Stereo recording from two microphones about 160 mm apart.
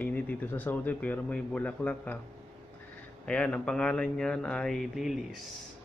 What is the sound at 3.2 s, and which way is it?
Speech, 5° left (ahead or behind).